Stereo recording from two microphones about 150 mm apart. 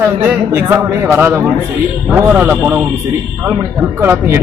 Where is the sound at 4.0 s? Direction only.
15° right (ahead or behind).